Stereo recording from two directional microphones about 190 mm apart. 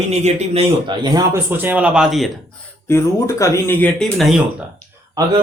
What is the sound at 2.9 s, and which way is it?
Speech, 15° left (ahead or behind).